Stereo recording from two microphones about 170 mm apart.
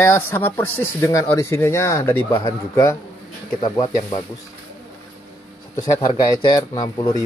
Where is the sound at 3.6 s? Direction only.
30° left (ahead or behind).